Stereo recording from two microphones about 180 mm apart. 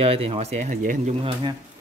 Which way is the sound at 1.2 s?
30° right (ahead or behind).